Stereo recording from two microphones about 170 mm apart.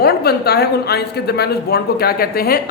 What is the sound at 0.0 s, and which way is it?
Speech, 65° left (ahead or behind).